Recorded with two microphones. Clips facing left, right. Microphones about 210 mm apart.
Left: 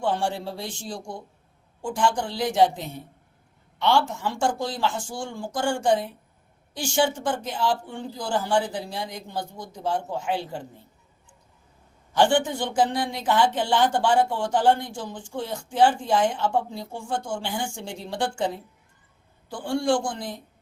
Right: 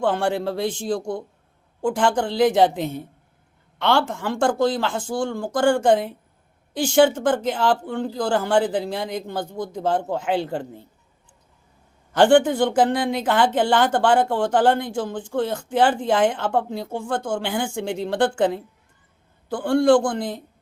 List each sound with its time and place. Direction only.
0.0 s speech: 55° right (ahead or behind)
12.5 s speech: 55° right (ahead or behind)